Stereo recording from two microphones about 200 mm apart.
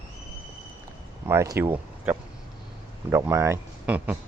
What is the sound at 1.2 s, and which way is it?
Speech, 15° right (ahead or behind).